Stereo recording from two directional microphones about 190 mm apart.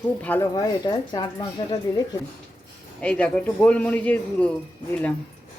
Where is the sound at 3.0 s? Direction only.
5° left (ahead or behind).